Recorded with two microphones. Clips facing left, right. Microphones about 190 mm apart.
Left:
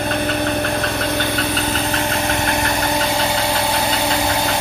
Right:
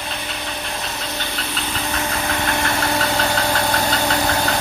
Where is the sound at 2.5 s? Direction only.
15° left (ahead or behind).